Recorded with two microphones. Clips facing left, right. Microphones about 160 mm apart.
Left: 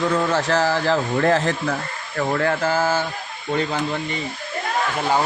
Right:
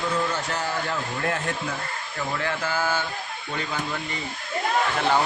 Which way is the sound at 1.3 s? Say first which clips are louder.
Left 8 dB; 80° left.